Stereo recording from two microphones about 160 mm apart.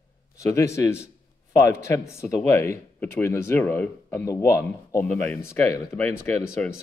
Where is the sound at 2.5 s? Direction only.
15° left (ahead or behind).